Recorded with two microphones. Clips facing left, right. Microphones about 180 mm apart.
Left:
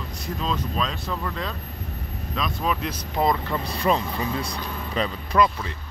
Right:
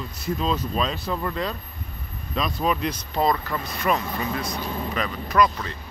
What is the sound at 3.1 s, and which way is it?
Speech, 20° left (ahead or behind).